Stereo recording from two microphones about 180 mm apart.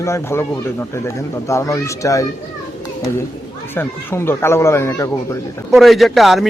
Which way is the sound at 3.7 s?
10° left (ahead or behind).